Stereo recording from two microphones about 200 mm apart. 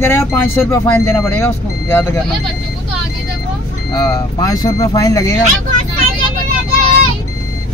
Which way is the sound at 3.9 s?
15° left (ahead or behind).